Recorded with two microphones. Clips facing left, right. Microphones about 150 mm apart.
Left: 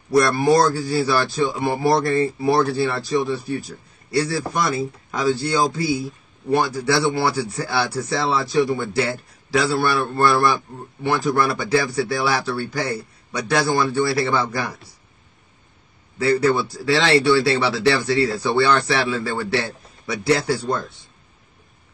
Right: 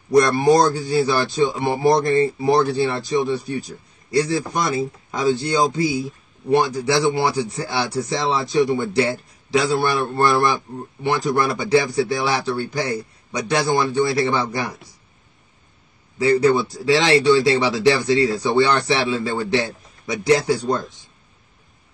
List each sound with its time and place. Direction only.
0.1 s a man's voice: 20° right (ahead or behind)
16.2 s a man's voice: 15° right (ahead or behind)